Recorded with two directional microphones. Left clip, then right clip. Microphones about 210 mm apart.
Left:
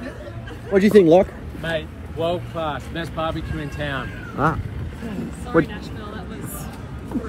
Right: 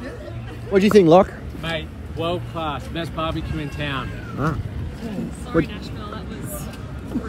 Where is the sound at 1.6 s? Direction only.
5° right (ahead or behind).